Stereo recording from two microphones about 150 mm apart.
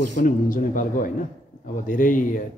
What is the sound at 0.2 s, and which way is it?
Speech, 60° left (ahead or behind).